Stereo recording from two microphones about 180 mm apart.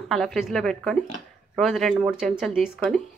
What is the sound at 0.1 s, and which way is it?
Speech, centre (ahead or behind).